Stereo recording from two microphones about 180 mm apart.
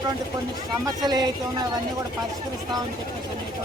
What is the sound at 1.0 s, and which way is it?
Speech, 25° right (ahead or behind).